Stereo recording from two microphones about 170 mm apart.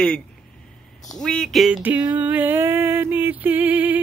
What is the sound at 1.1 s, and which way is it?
Speech, centre (ahead or behind).